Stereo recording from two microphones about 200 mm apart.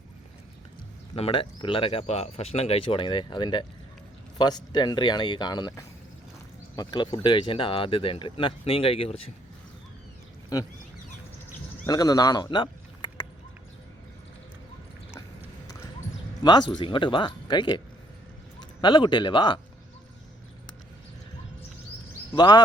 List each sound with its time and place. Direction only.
1.1 s speech: 30° left (ahead or behind)
10.5 s speech: 20° left (ahead or behind)
11.9 s speech: 20° left (ahead or behind)
16.4 s speech: 20° left (ahead or behind)
22.3 s speech: 20° left (ahead or behind)